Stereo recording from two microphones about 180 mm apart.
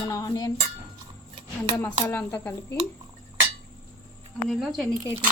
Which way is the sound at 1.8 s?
10° left (ahead or behind).